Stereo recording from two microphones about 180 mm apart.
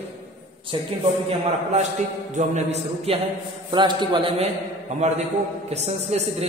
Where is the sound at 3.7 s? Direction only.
25° right (ahead or behind).